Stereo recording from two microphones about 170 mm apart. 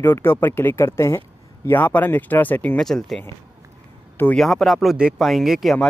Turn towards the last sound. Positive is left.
turn(degrees=0)  # may be behind; listen again after turning